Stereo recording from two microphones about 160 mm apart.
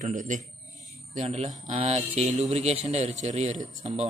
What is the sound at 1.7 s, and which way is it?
Speech, 40° right (ahead or behind).